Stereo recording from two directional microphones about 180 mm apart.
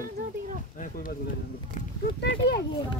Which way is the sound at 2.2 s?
65° left (ahead or behind).